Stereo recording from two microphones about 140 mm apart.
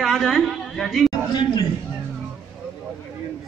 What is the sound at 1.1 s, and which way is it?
Speech, 30° left (ahead or behind).